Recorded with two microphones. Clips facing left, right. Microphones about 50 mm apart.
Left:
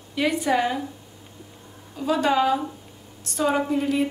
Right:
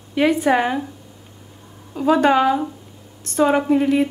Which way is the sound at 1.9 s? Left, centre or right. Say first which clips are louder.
Right 6 dB; right.